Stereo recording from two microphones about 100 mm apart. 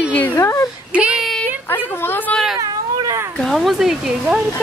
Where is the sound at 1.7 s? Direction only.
20° left (ahead or behind).